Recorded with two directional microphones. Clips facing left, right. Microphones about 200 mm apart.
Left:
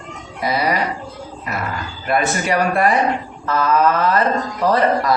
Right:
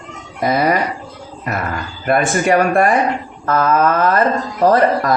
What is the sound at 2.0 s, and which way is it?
Speech, 50° right (ahead or behind).